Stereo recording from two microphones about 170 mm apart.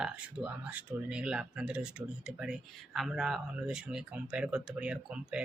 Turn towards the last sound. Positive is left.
turn(degrees=-5)  # may be behind; listen again after turning